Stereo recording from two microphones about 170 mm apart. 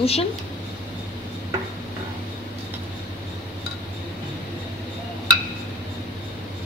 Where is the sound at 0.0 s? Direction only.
35° left (ahead or behind).